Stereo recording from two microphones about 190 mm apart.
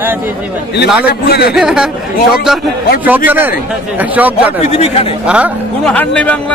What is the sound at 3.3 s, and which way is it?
Speech, 10° right (ahead or behind).